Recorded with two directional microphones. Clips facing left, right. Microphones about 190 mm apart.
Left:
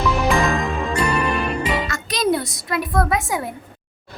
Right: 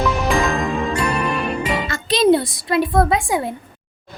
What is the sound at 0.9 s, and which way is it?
Music, centre (ahead or behind).